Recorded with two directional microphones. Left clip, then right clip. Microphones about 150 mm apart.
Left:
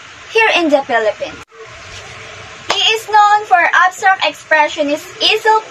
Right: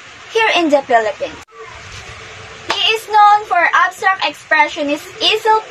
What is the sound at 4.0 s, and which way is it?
A child's voice, 10° left (ahead or behind).